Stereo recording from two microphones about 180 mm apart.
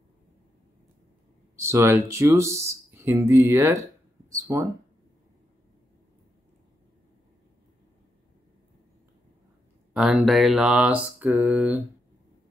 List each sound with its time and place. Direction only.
1.6 s speech: 15° right (ahead or behind)
4.3 s a sound: 15° right (ahead or behind)
9.9 s mantra: 5° right (ahead or behind)